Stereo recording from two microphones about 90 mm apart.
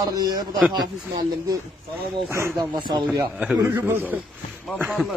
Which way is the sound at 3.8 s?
25° right (ahead or behind).